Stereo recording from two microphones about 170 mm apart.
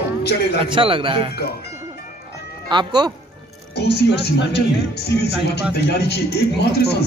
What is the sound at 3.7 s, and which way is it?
Speech, 75° left (ahead or behind).